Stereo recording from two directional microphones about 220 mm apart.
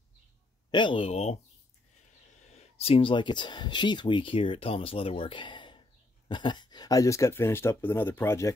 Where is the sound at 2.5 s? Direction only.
30° left (ahead or behind).